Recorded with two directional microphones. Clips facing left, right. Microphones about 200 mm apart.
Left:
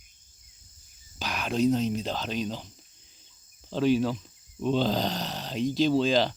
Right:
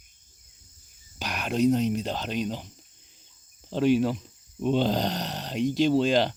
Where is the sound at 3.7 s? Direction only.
10° right (ahead or behind).